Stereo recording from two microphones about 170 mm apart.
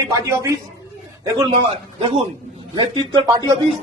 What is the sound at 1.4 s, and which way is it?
A man's voice, 30° right (ahead or behind).